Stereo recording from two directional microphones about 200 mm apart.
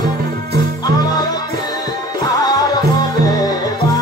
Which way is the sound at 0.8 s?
20° left (ahead or behind).